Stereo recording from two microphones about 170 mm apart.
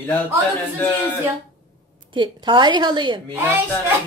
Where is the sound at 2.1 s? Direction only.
30° right (ahead or behind).